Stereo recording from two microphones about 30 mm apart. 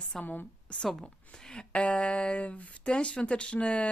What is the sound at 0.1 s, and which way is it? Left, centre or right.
Speech, centre.